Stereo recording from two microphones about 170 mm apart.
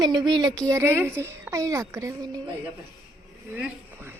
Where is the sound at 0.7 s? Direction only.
15° right (ahead or behind).